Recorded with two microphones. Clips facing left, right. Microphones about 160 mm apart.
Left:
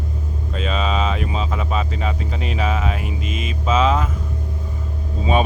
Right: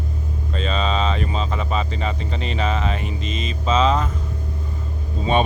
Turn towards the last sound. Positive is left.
turn(degrees=5)  # may be behind; listen again after turning